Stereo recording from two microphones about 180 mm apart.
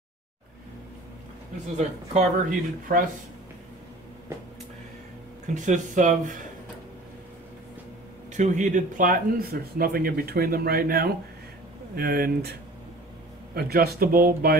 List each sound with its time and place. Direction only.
1.8 s speech: 40° right (ahead or behind)
5.5 s speech: 45° right (ahead or behind)
8.3 s speech: 45° right (ahead or behind); by 12.5 s 60° right (ahead or behind)
13.6 s speech: 60° right (ahead or behind)